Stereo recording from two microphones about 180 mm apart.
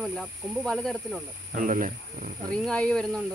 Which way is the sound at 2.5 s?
5° left (ahead or behind).